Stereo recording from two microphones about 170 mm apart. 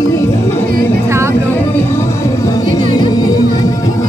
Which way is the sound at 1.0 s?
15° right (ahead or behind).